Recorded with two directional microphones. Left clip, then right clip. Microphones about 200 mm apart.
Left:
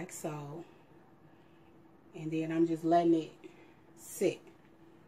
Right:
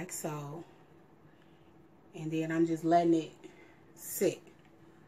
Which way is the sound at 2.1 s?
Centre (ahead or behind).